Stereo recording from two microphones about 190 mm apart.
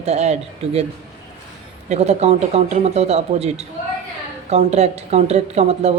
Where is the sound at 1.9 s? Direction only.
35° right (ahead or behind).